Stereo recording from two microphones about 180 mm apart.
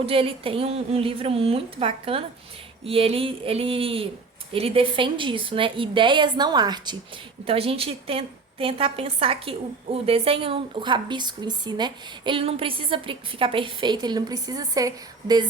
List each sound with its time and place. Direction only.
0.0 s a woman's voice: 30° right (ahead or behind)